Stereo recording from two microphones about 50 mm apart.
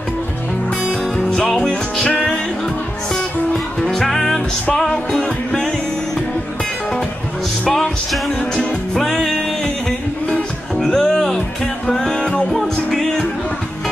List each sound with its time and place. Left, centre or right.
1.3 s music: centre
3.9 s music: centre
7.6 s music: centre
9.0 s music: centre
12.4 s music: centre